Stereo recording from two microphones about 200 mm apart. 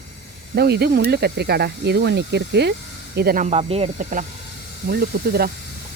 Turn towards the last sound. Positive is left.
turn(degrees=-50)  # may be behind; listen again after turning